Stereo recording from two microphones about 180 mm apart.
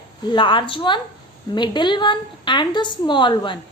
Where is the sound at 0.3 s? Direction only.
25° left (ahead or behind).